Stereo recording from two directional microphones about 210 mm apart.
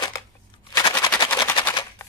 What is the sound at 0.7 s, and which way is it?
Machine gun, 15° left (ahead or behind).